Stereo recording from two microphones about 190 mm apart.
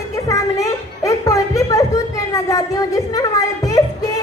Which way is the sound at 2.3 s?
20° left (ahead or behind).